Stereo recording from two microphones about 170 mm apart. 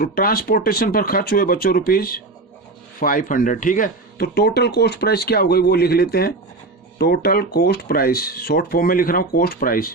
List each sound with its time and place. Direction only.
0.0 s speech: 60° left (ahead or behind)